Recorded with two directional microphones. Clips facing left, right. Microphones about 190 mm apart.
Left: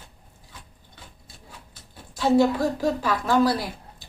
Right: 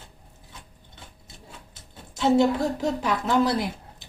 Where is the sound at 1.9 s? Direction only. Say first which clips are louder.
Left 1 dB; 25° right (ahead or behind).